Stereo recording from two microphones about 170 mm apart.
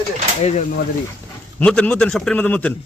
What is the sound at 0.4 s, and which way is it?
Speech, 40° left (ahead or behind).